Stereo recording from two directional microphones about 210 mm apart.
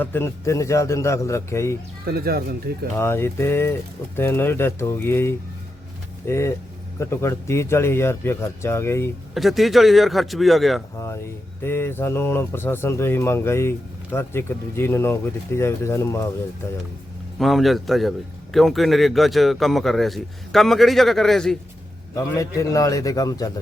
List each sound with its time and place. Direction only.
0.0 s speech: 10° left (ahead or behind)
2.0 s speech: 45° right (ahead or behind)
3.0 s speech: 10° left (ahead or behind)
9.3 s speech: centre (ahead or behind)
10.9 s speech: 15° left (ahead or behind)
17.3 s speech: centre (ahead or behind)
22.1 s speech: 15° left (ahead or behind)